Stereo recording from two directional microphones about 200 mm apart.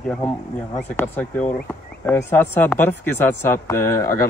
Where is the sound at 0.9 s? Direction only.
5° left (ahead or behind).